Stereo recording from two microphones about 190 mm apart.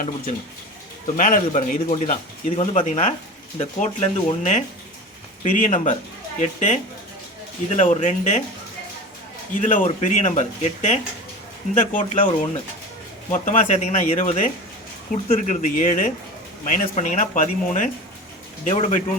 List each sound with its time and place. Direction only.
1.0 s speech: 45° left (ahead or behind)
9.6 s speech: 40° left (ahead or behind)